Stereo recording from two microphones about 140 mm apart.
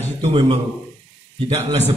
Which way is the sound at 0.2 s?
45° right (ahead or behind).